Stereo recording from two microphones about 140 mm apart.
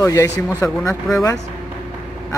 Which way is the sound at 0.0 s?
20° left (ahead or behind).